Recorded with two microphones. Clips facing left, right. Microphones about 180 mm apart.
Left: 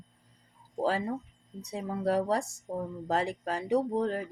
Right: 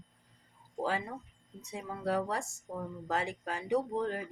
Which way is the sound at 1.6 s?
35° left (ahead or behind).